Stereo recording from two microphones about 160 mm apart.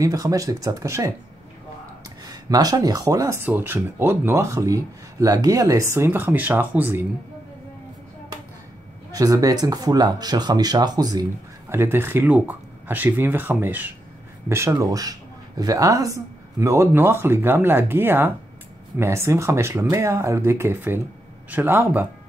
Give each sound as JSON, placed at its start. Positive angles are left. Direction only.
{"t": 0.0, "sound": "speech", "side_deg": -20}
{"t": 2.2, "sound": "speech", "side_deg": -25}
{"t": 9.1, "sound": "speech", "side_deg": -20}